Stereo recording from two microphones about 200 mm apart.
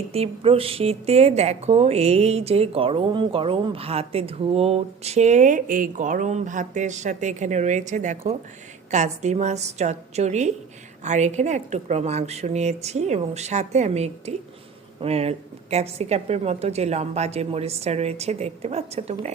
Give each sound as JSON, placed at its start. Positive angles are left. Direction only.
{"t": 0.1, "sound": "a woman's voice", "side_deg": -30}